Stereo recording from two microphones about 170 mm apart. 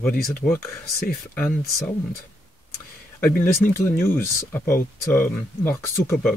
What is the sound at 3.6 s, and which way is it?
Speech, 15° left (ahead or behind).